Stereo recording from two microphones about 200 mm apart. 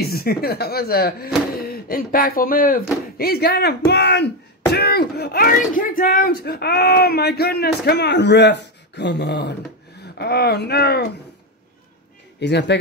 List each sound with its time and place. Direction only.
0.0 s speech: 50° left (ahead or behind)
12.4 s a man's voice: 60° left (ahead or behind)